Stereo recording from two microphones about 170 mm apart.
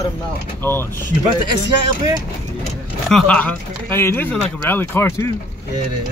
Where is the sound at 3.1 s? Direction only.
5° left (ahead or behind).